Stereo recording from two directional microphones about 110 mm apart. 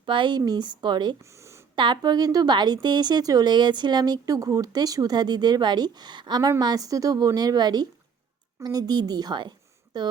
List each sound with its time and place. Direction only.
0.0 s a woman's voice: 45° right (ahead or behind)